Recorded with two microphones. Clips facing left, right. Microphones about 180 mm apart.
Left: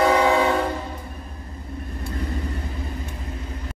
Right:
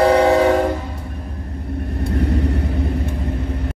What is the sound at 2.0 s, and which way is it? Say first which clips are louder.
Vehicle: right 10 dB; 70° right (ahead or behind).